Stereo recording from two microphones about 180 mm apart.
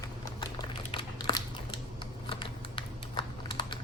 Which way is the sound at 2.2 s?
30° left (ahead or behind).